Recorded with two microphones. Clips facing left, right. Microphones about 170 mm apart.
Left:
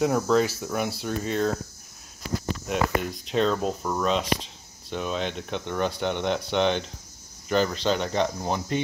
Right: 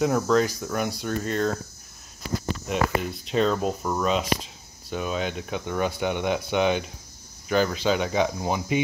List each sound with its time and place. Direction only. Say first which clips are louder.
0.0 s speech: even; centre (ahead or behind)
3.0 s speech: right 1 dB; centre (ahead or behind)